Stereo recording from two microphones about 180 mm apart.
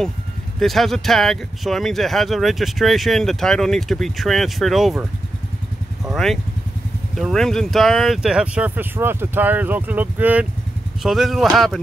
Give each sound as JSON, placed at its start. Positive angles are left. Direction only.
{"t": 0.6, "sound": "speech", "side_deg": 0}
{"t": 6.0, "sound": "speech", "side_deg": 0}